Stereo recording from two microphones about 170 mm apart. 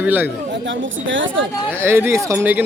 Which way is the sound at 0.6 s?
90° right.